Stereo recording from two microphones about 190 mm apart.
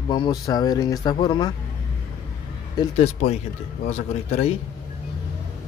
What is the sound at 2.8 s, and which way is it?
Speech, 30° left (ahead or behind).